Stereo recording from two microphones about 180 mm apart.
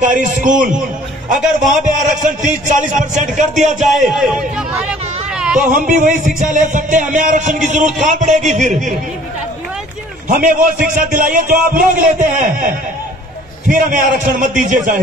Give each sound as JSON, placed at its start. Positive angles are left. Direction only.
{"t": 0.0, "sound": "speech", "side_deg": -45}
{"t": 4.1, "sound": "speech", "side_deg": -5}
{"t": 5.6, "sound": "speech", "side_deg": -45}
{"t": 10.2, "sound": "speech", "side_deg": -45}